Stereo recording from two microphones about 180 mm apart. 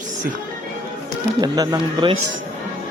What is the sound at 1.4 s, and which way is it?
Speech, 25° right (ahead or behind).